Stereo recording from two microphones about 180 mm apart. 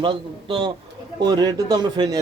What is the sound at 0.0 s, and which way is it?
A man's voice, 25° right (ahead or behind).